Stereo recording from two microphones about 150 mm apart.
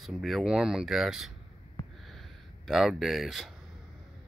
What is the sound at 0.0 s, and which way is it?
Speech, centre (ahead or behind).